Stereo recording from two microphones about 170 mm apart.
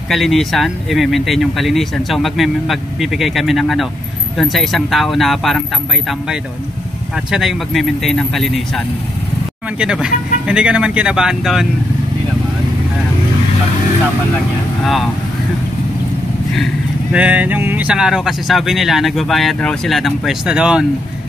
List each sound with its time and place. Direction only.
0.1 s speech: centre (ahead or behind)
7.2 s speech: centre (ahead or behind)
17.1 s speech: 10° right (ahead or behind)